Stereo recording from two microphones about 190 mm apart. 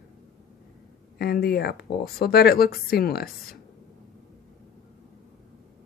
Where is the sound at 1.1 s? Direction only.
55° left (ahead or behind).